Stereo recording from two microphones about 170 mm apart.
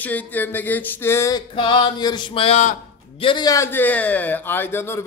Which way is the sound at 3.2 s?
25° left (ahead or behind).